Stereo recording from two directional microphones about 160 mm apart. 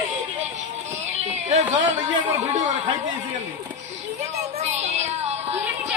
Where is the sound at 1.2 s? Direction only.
45° right (ahead or behind).